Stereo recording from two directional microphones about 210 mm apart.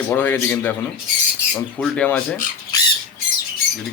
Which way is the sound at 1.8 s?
5° left (ahead or behind).